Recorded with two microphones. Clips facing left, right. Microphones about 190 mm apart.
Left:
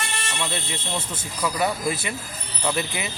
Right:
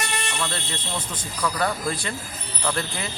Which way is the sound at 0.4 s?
10° left (ahead or behind).